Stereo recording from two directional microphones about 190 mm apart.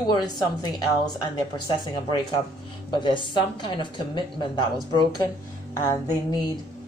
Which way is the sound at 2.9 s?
25° left (ahead or behind).